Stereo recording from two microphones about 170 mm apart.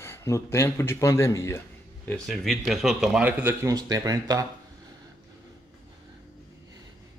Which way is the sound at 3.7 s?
20° right (ahead or behind).